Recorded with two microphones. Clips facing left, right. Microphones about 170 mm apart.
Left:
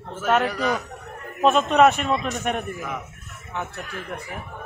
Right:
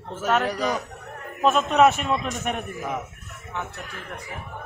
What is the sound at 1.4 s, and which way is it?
A man's voice, centre (ahead or behind).